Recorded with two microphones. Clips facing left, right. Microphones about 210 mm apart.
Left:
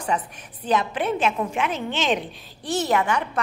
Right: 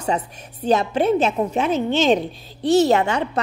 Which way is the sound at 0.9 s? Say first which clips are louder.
Right 5 dB; 40° right (ahead or behind).